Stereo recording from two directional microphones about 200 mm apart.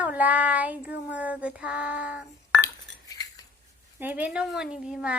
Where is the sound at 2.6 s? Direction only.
15° left (ahead or behind).